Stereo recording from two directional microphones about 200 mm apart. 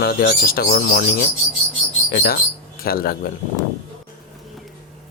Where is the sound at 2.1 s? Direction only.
50° left (ahead or behind).